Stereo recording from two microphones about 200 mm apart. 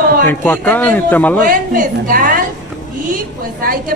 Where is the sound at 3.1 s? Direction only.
45° right (ahead or behind).